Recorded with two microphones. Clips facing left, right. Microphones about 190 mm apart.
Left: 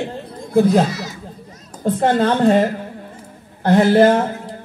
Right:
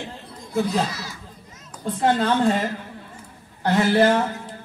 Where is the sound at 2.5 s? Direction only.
55° left (ahead or behind).